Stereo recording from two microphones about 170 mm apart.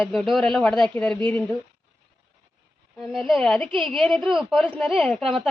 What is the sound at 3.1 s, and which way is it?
Speech, centre (ahead or behind).